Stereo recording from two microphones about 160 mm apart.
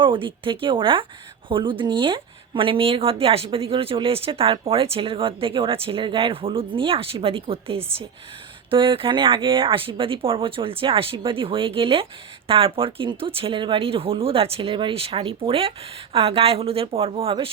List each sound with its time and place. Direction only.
0.0 s a woman's voice: 30° right (ahead or behind)